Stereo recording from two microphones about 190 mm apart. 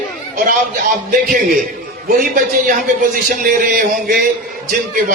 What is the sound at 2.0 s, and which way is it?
A man's voice, 45° right (ahead or behind).